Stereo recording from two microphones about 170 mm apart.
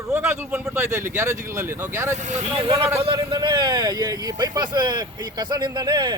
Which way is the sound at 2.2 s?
40° right (ahead or behind).